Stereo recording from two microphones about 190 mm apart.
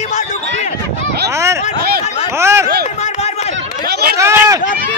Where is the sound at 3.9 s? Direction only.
55° right (ahead or behind).